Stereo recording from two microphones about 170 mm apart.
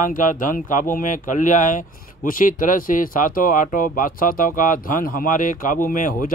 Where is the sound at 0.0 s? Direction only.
50° left (ahead or behind).